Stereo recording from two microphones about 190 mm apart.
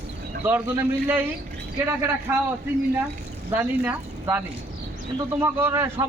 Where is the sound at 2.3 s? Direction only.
10° right (ahead or behind).